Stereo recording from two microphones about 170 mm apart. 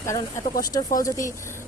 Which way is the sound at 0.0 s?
15° left (ahead or behind).